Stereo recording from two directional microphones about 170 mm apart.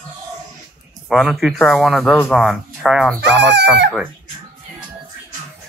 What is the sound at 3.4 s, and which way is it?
Speech, 90° right.